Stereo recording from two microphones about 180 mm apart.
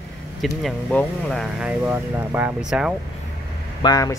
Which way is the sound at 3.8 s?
20° left (ahead or behind).